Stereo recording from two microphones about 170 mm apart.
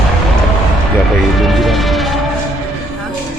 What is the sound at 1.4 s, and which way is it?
Music, centre (ahead or behind).